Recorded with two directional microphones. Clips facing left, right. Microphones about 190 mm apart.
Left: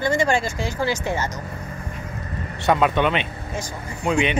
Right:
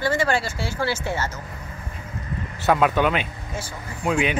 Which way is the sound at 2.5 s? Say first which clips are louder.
Even; 5° right (ahead or behind).